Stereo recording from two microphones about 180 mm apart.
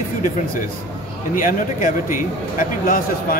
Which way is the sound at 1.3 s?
45° left (ahead or behind).